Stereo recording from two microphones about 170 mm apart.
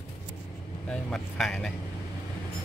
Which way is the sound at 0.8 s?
5° left (ahead or behind).